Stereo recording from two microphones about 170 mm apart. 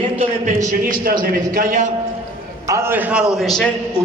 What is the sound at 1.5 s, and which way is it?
Speech, 45° right (ahead or behind).